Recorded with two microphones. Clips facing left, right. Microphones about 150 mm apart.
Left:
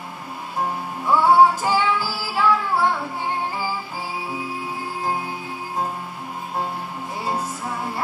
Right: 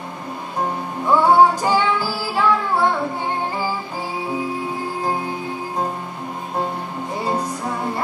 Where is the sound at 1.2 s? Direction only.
5° left (ahead or behind).